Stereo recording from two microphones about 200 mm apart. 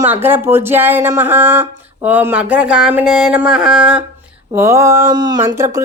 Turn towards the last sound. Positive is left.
turn(degrees=-15)  # may be behind; listen again after turning